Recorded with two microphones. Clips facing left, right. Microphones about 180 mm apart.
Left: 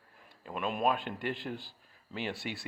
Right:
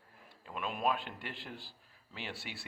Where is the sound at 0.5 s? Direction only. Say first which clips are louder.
Left 4 dB; centre (ahead or behind).